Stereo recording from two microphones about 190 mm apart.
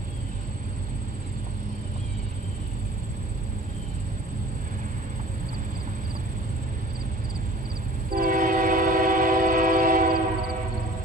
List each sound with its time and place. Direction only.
8.1 s train: 50° right (ahead or behind)